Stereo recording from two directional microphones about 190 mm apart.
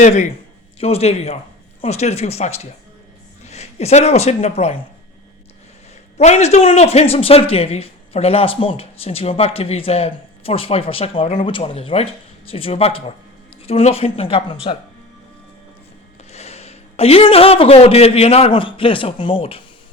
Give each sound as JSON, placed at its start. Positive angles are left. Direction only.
{"t": 0.0, "sound": "a man's voice", "side_deg": 35}
{"t": 6.1, "sound": "a man's voice", "side_deg": 35}
{"t": 16.3, "sound": "a man's voice", "side_deg": 35}